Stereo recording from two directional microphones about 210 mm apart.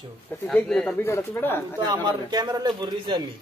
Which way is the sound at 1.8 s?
20° right (ahead or behind).